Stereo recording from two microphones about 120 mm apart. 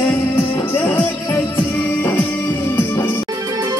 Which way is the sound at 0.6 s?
20° left (ahead or behind).